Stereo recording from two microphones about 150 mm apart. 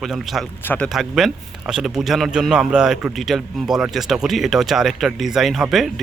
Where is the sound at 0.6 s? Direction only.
10° left (ahead or behind).